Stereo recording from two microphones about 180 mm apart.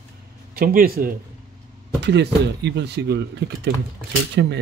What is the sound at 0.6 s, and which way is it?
Speech, 55° right (ahead or behind).